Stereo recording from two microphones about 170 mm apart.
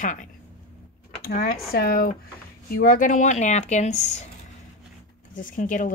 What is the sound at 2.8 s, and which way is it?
Speech, 55° left (ahead or behind).